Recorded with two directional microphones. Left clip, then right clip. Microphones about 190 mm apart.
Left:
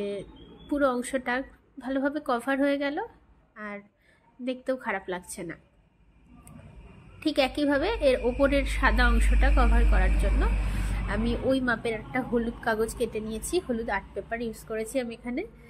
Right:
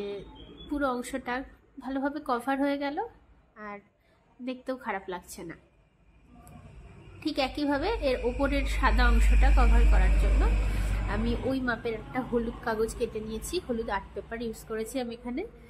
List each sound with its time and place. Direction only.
0.0 s a woman's voice: 15° left (ahead or behind)
7.2 s a woman's voice: 20° left (ahead or behind)